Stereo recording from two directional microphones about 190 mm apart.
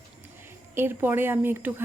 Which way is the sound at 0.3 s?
10° right (ahead or behind).